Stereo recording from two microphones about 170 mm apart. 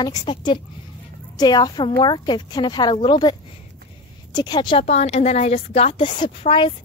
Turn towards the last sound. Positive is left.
turn(degrees=30)  # may be behind; listen again after turning